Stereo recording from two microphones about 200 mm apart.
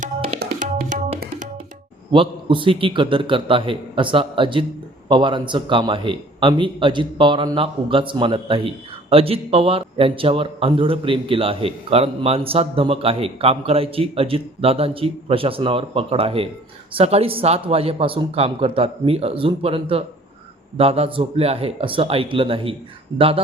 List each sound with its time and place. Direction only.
0.0 s tabla: 45° right (ahead or behind)
2.1 s a man's voice: 25° right (ahead or behind)